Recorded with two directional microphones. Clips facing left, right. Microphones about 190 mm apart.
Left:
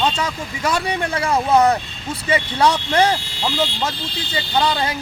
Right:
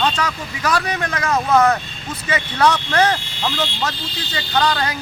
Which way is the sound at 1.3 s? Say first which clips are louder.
Even; 15° left (ahead or behind).